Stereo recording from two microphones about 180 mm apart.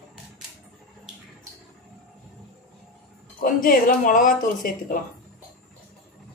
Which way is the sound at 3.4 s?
50° left (ahead or behind).